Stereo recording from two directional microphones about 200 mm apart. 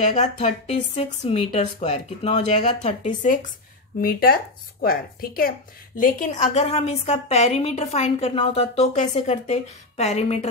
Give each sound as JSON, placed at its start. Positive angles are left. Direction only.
{"t": 0.0, "sound": "a woman's voice", "side_deg": 35}